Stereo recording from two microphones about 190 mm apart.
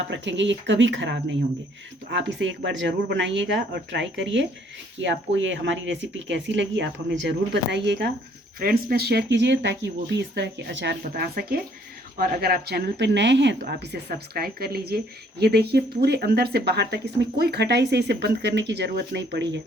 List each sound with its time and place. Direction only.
0.1 s speech: 70° right (ahead or behind)
8.5 s speech: 50° right (ahead or behind); by 10.9 s 65° right (ahead or behind)
11.0 s speech: 50° right (ahead or behind); by 19.6 s 70° right (ahead or behind)